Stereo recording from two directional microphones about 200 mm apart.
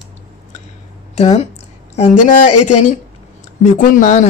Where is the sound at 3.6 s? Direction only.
40° left (ahead or behind).